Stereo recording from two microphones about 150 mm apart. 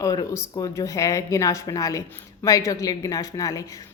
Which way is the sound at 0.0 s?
25° left (ahead or behind).